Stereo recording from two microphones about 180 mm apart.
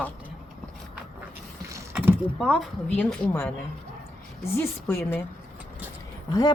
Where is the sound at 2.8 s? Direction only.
10° left (ahead or behind).